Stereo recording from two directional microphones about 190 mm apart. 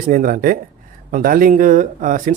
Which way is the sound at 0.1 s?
45° right (ahead or behind).